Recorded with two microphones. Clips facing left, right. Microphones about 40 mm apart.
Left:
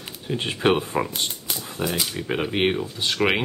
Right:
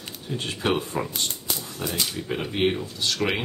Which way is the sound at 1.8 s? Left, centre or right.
Centre.